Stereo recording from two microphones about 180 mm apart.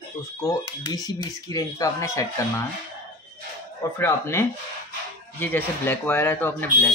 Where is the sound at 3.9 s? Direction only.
15° left (ahead or behind).